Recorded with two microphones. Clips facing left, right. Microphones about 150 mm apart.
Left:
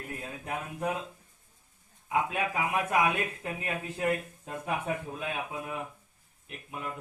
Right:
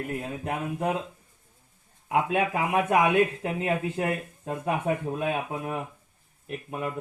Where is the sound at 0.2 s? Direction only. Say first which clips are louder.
Right 6 dB; 65° right (ahead or behind).